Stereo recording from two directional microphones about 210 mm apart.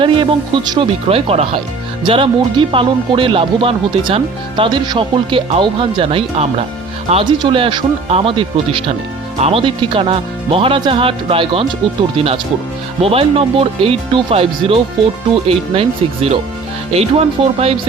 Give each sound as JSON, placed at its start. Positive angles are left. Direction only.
{"t": 0.0, "sound": "speech", "side_deg": -25}